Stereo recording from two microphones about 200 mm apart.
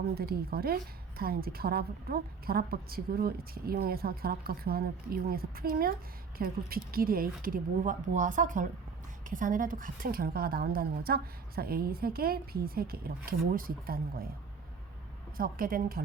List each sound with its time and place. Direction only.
0.1 s a woman's voice: 50° right (ahead or behind)
15.4 s a woman's voice: 45° right (ahead or behind)